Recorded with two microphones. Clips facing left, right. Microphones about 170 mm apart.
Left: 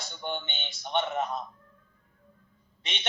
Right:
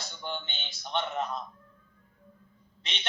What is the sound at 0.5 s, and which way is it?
Speech, 5° left (ahead or behind).